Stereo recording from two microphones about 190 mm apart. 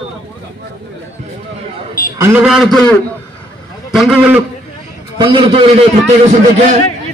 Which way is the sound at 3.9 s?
5° right (ahead or behind).